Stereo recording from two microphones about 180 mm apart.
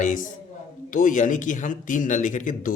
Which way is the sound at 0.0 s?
45° left (ahead or behind).